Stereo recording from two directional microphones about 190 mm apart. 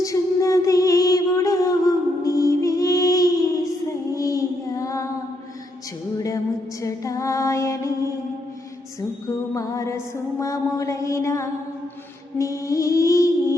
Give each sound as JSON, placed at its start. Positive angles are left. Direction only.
{"t": 0.0, "sound": "music", "side_deg": 15}
{"t": 4.1, "sound": "child singing", "side_deg": 15}
{"t": 6.1, "sound": "music", "side_deg": 20}
{"t": 6.8, "sound": "female singing", "side_deg": 15}
{"t": 9.0, "sound": "music", "side_deg": 15}